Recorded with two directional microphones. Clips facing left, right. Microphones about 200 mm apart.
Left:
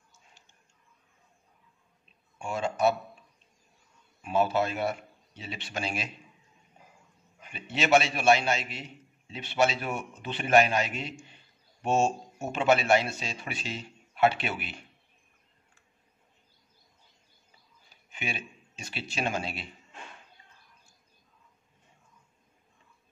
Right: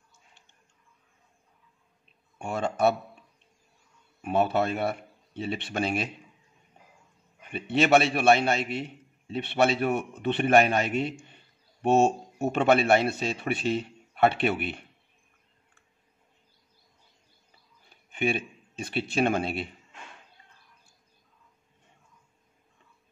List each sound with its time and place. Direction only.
2.3 s a man's voice: 55° right (ahead or behind)
4.2 s speech: 60° right (ahead or behind)
7.4 s a man's voice: 55° right (ahead or behind)
18.1 s speech: 55° right (ahead or behind)